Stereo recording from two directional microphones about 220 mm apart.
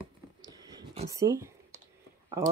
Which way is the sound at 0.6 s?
20° right (ahead or behind).